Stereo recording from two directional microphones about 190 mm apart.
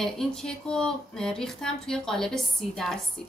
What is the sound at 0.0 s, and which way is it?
Speech, 5° left (ahead or behind).